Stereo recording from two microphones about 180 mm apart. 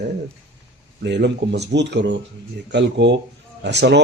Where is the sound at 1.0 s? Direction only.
70° right (ahead or behind).